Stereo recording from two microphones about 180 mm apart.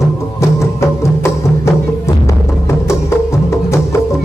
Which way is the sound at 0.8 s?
15° left (ahead or behind).